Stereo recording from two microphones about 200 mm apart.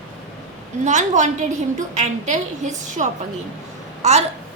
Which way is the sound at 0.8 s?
35° right (ahead or behind).